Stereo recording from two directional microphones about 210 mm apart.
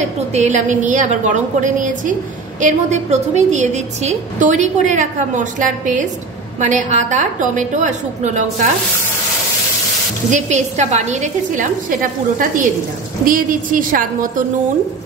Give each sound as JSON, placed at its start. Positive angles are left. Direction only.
{"t": 0.3, "sound": "a woman's voice", "side_deg": -35}
{"t": 10.3, "sound": "a woman's voice", "side_deg": -35}